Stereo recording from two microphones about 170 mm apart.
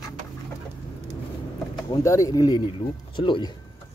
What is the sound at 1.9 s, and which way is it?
Speech, 20° left (ahead or behind).